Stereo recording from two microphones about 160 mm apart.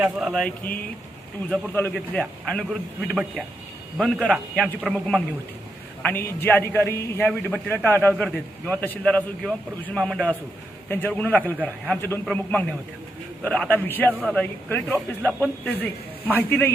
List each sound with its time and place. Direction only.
0.0 s a man's voice: centre (ahead or behind)
1.7 s a man's voice: 10° left (ahead or behind)
3.9 s a man's voice: 5° left (ahead or behind)
14.1 s speech: 5° right (ahead or behind)
14.3 s a man's voice: 10° left (ahead or behind)